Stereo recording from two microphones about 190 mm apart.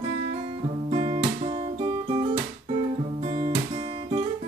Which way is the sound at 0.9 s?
30° right (ahead or behind).